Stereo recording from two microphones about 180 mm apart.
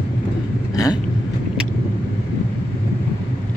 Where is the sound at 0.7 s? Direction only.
20° left (ahead or behind).